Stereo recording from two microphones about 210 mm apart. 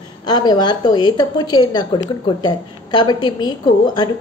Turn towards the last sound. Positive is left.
turn(degrees=20)  # may be behind; listen again after turning